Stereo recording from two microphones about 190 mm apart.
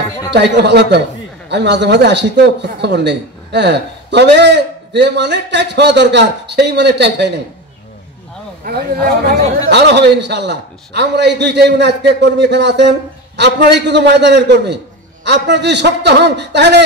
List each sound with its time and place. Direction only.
0.3 s a man's voice: 65° right (ahead or behind)
8.6 s a man's voice: 55° right (ahead or behind)